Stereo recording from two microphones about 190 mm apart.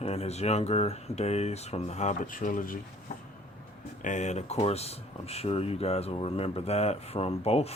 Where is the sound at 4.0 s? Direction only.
40° left (ahead or behind).